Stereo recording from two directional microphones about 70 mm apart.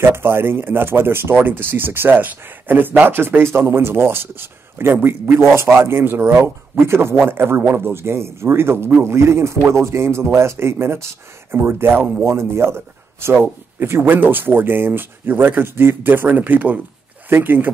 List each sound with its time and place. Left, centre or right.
0.0 s a man's voice: right